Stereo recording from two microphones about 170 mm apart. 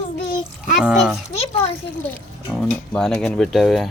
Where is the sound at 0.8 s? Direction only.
Centre (ahead or behind).